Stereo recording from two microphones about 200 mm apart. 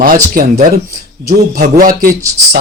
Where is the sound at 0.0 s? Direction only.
45° right (ahead or behind).